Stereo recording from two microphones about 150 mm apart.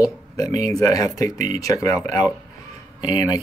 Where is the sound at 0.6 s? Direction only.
20° left (ahead or behind).